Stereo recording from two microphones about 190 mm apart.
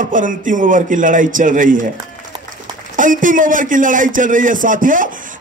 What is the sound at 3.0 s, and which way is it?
A man's voice, 45° right (ahead or behind).